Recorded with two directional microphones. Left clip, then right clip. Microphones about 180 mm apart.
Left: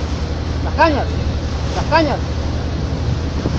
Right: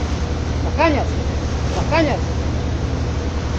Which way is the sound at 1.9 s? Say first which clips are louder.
Left 3 dB; 25° left (ahead or behind).